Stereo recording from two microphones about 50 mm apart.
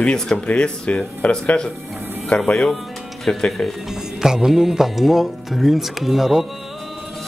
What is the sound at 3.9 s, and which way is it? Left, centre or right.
A man's voice, centre.